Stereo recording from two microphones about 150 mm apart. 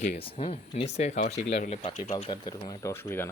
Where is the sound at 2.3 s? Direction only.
25° left (ahead or behind).